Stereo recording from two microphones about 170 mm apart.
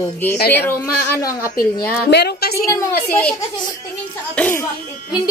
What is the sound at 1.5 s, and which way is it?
A woman's voice, 70° left (ahead or behind).